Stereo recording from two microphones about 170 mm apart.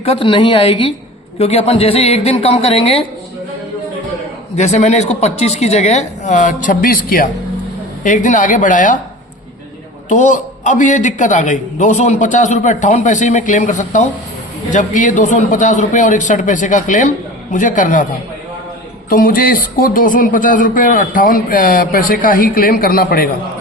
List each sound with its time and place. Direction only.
0.0 s a woman's voice: 35° left (ahead or behind)
4.5 s a woman's voice: 40° left (ahead or behind)
10.1 s a man's voice: 50° left (ahead or behind)
19.0 s speech: 55° left (ahead or behind)